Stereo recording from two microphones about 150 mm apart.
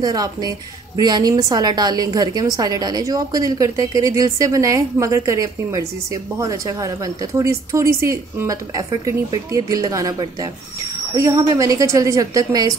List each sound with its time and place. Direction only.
0.0 s a woman's voice: 25° right (ahead or behind)